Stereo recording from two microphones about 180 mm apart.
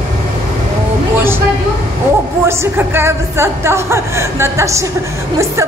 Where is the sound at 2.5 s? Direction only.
15° right (ahead or behind).